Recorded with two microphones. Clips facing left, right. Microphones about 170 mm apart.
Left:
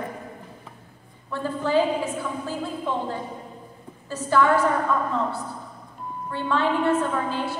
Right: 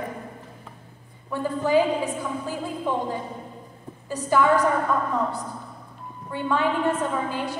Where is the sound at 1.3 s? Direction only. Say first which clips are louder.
Right 2 dB; 15° right (ahead or behind).